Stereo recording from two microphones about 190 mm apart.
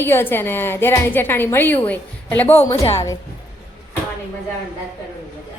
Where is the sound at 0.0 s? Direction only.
10° left (ahead or behind).